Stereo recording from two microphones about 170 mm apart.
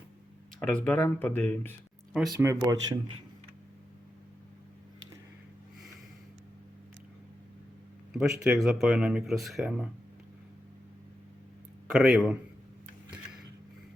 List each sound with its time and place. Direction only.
0.7 s speech: 10° left (ahead or behind)
2.3 s speech: 15° right (ahead or behind)
8.1 s speech: 5° right (ahead or behind)
11.9 s speech: centre (ahead or behind)